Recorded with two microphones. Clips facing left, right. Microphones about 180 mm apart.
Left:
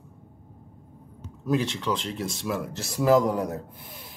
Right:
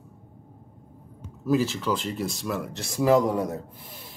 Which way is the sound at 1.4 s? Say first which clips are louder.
Right 2 dB; 5° right (ahead or behind).